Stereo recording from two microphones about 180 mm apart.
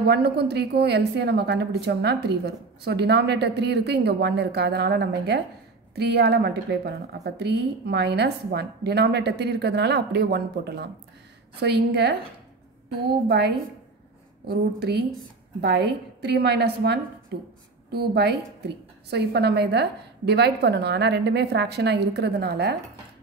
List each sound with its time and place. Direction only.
0.0 s a woman's voice: 65° right (ahead or behind)
14.5 s a woman's voice: 60° right (ahead or behind)